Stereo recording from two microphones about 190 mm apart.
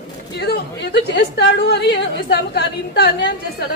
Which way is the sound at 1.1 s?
55° left (ahead or behind).